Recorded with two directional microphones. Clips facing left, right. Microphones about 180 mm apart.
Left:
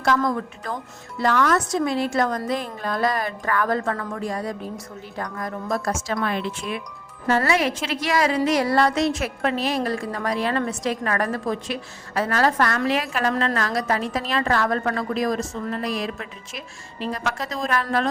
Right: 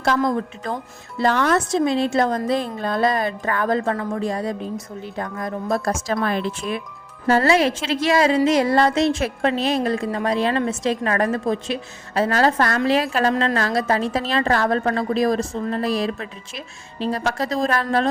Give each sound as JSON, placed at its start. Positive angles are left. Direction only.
{"t": 0.0, "sound": "a woman's voice", "side_deg": -25}
{"t": 5.8, "sound": "a woman's voice", "side_deg": -35}